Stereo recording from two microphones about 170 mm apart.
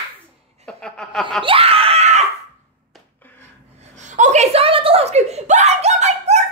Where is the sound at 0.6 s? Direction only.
5° left (ahead or behind).